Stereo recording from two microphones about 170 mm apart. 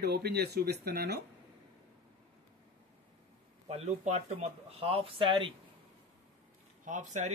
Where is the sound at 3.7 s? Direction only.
40° right (ahead or behind).